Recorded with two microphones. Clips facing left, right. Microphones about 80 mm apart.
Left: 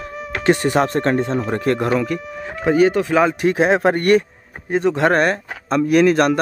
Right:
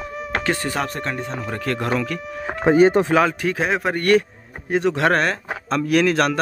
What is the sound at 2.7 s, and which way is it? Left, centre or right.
Speech, right.